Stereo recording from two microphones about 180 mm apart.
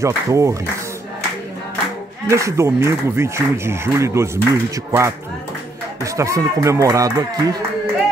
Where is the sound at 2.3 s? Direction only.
15° right (ahead or behind).